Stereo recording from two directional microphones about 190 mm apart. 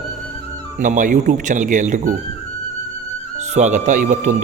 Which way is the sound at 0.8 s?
45° right (ahead or behind).